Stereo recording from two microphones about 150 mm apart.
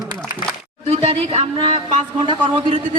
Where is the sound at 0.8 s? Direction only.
40° right (ahead or behind).